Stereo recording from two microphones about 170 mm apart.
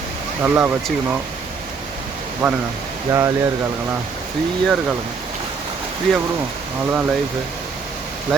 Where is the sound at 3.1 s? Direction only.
20° right (ahead or behind).